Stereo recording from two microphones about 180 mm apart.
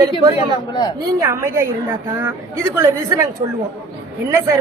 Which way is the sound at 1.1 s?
15° right (ahead or behind).